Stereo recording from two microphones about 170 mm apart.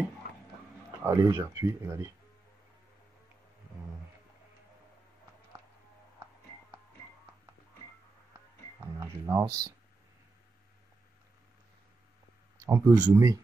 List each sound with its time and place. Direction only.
1.0 s speech: 15° right (ahead or behind)
9.0 s speech: 20° right (ahead or behind)
12.6 s speech: 15° right (ahead or behind)